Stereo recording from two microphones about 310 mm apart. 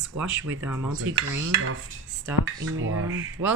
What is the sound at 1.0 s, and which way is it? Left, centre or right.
Speech, right.